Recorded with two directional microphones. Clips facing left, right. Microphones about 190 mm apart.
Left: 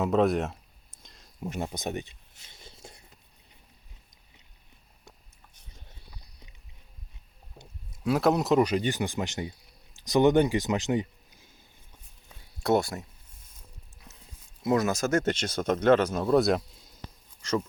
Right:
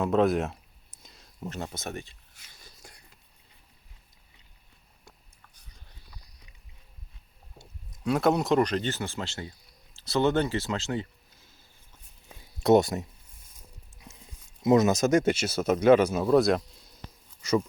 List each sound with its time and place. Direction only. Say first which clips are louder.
0.0 s a sound: even; centre (ahead or behind)
1.4 s whispering: left 3 dB; 15° left (ahead or behind)
7.9 s speech: even; centre (ahead or behind)
12.6 s speech: right 5 dB; 20° right (ahead or behind)
14.0 s a sound: right 4 dB; 15° right (ahead or behind)
14.6 s speech: right 4 dB; 20° right (ahead or behind)